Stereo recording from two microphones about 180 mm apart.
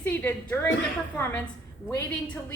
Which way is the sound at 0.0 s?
10° left (ahead or behind).